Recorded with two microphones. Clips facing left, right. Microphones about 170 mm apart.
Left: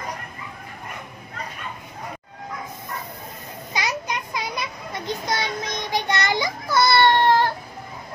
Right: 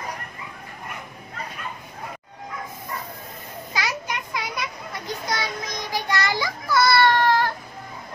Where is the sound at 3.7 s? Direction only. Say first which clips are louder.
Left 2 dB; 20° left (ahead or behind).